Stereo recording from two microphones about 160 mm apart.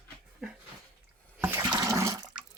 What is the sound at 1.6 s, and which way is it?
Toilet flush, 20° right (ahead or behind).